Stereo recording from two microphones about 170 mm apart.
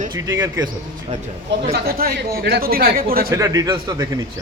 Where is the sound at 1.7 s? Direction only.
65° right (ahead or behind).